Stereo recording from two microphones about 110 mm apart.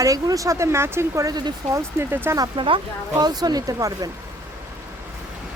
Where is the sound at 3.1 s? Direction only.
35° right (ahead or behind).